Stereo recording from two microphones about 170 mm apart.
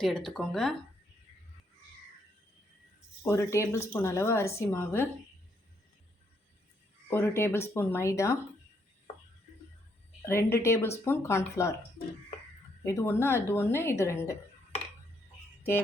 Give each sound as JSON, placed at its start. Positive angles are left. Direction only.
{"t": 0.0, "sound": "speech", "side_deg": 0}
{"t": 3.2, "sound": "a woman's voice", "side_deg": 15}
{"t": 7.1, "sound": "a woman's voice", "side_deg": 15}
{"t": 10.2, "sound": "a woman's voice", "side_deg": 15}
{"t": 12.8, "sound": "a woman's voice", "side_deg": 15}